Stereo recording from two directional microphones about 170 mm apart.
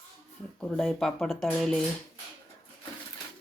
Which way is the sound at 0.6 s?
5° left (ahead or behind).